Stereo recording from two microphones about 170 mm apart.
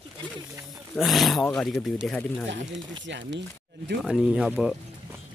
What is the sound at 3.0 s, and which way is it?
Speech, 90° right.